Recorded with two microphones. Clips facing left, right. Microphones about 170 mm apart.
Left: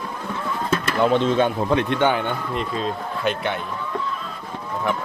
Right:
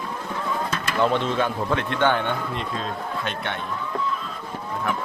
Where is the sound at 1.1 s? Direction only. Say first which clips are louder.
Left 5 dB; 20° left (ahead or behind).